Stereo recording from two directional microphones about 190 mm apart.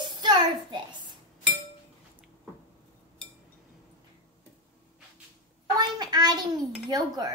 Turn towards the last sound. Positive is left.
turn(degrees=-20)  # may be behind; listen again after turning